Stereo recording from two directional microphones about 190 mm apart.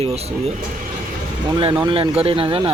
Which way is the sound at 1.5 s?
25° right (ahead or behind).